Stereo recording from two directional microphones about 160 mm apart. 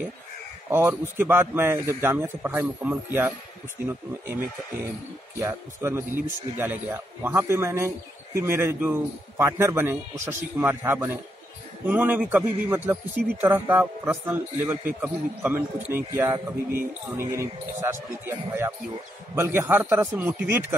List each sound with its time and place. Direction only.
0.7 s a man's voice: 15° right (ahead or behind)